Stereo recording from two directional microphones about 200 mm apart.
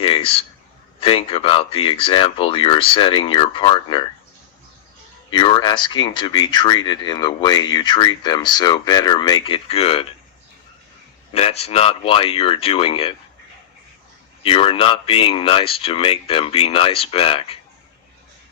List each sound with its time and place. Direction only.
0.9 s speech: 30° left (ahead or behind)
5.3 s speech: 25° left (ahead or behind)
11.3 s speech: 30° left (ahead or behind)
14.4 s speech: 25° left (ahead or behind)